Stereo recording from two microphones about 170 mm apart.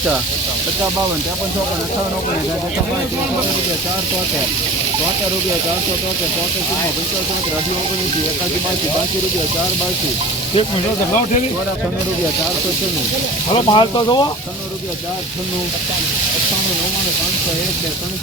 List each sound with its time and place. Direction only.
13.5 s speech: 25° left (ahead or behind)